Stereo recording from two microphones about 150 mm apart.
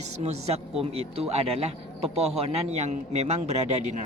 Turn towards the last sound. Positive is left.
turn(degrees=-50)  # may be behind; listen again after turning